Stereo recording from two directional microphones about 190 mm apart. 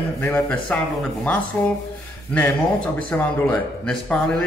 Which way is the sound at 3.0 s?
5° left (ahead or behind).